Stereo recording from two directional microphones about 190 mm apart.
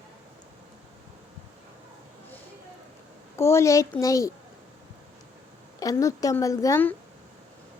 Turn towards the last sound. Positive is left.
turn(degrees=15)  # may be behind; listen again after turning